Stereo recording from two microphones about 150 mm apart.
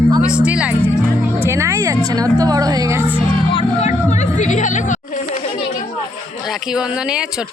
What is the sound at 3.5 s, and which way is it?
Music, 35° left (ahead or behind).